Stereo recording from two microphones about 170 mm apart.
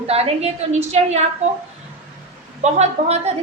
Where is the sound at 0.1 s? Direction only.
35° right (ahead or behind).